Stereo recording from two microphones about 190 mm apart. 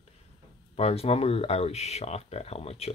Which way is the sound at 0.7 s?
30° left (ahead or behind).